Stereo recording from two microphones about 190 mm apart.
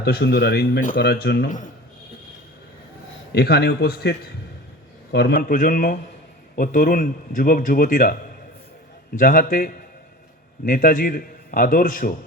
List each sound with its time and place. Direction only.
0.0 s speech: 60° left (ahead or behind)
3.3 s a man's voice: 55° left (ahead or behind)
9.1 s a man's voice: 50° left (ahead or behind)